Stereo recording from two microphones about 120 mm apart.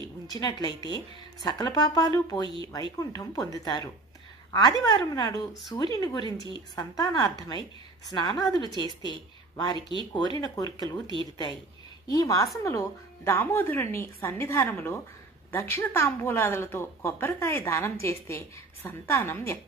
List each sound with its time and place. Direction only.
0.3 s speech: 35° left (ahead or behind)
12.1 s a woman's voice: 30° left (ahead or behind)